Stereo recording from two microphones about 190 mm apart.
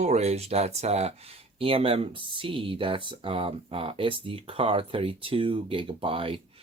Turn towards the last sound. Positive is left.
turn(degrees=-30)  # may be behind; listen again after turning